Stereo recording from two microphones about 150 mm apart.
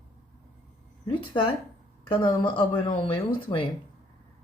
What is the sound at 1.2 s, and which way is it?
Speech, 35° left (ahead or behind).